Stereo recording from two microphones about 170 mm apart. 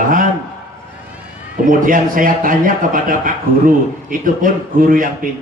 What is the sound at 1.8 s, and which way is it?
A man's voice, 55° right (ahead or behind).